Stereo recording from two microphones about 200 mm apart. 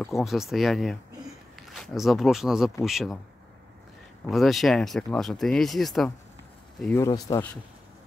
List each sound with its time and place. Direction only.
0.2 s a man's voice: centre (ahead or behind)
4.3 s speech: centre (ahead or behind); by 7.4 s 20° left (ahead or behind)